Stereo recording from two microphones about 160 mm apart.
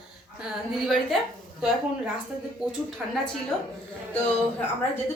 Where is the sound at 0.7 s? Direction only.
Centre (ahead or behind).